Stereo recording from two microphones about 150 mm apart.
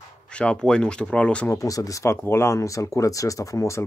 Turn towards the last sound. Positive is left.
turn(degrees=20)  # may be behind; listen again after turning